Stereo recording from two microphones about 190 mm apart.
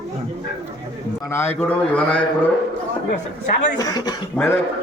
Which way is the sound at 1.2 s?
15° left (ahead or behind).